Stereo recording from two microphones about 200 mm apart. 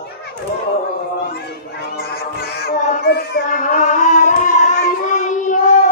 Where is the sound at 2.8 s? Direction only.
40° left (ahead or behind).